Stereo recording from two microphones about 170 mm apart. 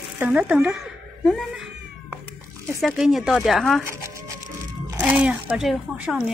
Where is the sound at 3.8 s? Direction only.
15° right (ahead or behind).